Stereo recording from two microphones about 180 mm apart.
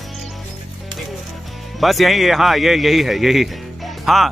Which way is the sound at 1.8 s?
Centre (ahead or behind).